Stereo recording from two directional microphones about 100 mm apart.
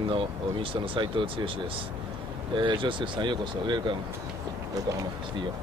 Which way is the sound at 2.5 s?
55° right (ahead or behind).